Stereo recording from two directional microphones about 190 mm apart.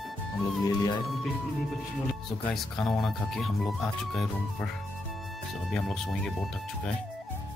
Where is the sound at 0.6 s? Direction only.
20° left (ahead or behind).